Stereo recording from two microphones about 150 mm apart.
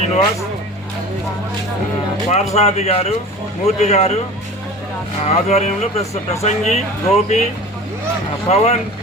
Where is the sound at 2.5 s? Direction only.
45° left (ahead or behind).